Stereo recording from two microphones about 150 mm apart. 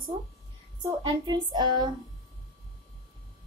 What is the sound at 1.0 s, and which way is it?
Speech, 30° right (ahead or behind).